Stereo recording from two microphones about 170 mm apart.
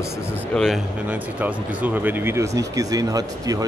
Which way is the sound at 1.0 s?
10° right (ahead or behind).